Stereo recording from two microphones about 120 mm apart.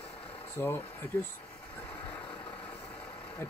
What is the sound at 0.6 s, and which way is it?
Speech, 20° left (ahead or behind).